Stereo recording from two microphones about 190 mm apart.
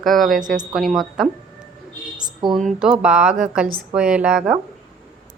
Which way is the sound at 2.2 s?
20° right (ahead or behind).